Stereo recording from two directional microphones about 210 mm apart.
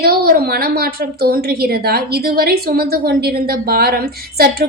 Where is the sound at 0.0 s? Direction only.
45° right (ahead or behind).